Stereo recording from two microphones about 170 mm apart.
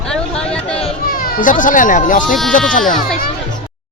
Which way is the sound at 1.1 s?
55° left (ahead or behind).